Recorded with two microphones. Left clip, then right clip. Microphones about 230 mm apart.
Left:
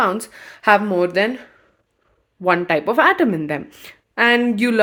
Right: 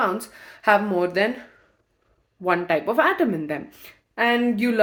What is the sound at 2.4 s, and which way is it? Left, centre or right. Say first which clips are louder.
Speech: left 4 dB; left.